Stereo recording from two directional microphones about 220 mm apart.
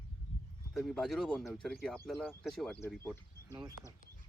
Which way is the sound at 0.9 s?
Centre (ahead or behind).